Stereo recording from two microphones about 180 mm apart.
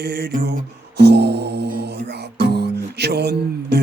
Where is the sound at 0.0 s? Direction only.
65° right (ahead or behind).